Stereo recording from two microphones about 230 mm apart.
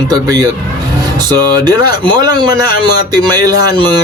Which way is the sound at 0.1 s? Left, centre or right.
Centre.